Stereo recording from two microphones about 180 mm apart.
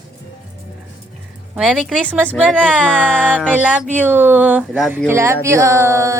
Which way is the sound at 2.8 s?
5° left (ahead or behind).